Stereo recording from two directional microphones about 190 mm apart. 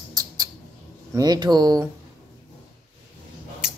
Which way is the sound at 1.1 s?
20° right (ahead or behind).